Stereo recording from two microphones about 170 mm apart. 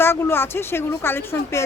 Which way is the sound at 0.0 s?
15° left (ahead or behind).